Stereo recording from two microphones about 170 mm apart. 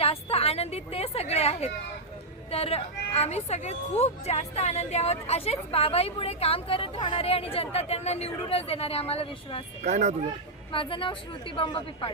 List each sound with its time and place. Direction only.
0.0 s a sound: 35° left (ahead or behind)
2.5 s a woman's voice: 35° left (ahead or behind)
9.8 s speech: 45° right (ahead or behind)
10.7 s a woman's voice: 30° left (ahead or behind)